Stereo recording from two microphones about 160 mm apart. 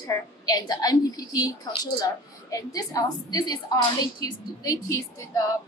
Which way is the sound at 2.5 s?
20° left (ahead or behind).